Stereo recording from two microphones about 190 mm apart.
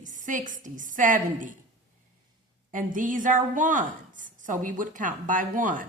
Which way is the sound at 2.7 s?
45° right (ahead or behind).